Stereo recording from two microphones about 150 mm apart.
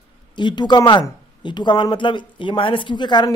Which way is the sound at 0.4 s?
30° left (ahead or behind).